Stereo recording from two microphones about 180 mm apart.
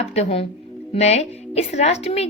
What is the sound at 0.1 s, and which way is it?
A woman's voice, 35° left (ahead or behind).